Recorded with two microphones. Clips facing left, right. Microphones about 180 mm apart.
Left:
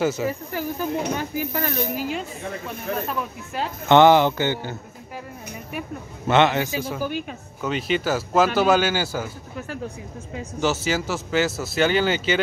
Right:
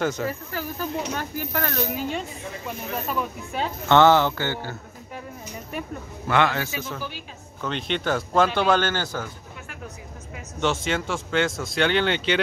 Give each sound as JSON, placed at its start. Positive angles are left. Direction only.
{"t": 0.0, "sound": "speech", "side_deg": 5}
{"t": 3.9, "sound": "speech", "side_deg": 15}
{"t": 6.2, "sound": "a man's voice", "side_deg": 20}
{"t": 7.0, "sound": "a woman's voice", "side_deg": 50}
{"t": 7.6, "sound": "speech", "side_deg": 5}
{"t": 10.6, "sound": "speech", "side_deg": 5}